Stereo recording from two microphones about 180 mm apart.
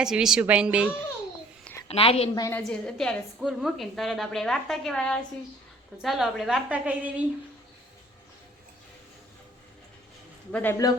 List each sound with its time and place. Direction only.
0.0 s a woman's voice: 5° right (ahead or behind)
1.9 s a woman's voice: 35° left (ahead or behind)
2.3 s a woman's voice: 20° left (ahead or behind)
2.6 s a woman's voice: 5° left (ahead or behind)
10.5 s a man's voice: 10° left (ahead or behind)